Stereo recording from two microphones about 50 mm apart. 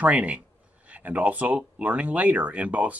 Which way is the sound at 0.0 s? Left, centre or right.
Right.